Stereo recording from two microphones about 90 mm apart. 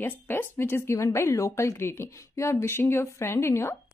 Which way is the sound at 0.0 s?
25° left (ahead or behind).